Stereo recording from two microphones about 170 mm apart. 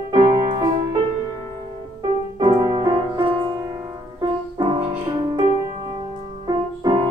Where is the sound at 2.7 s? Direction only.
30° right (ahead or behind).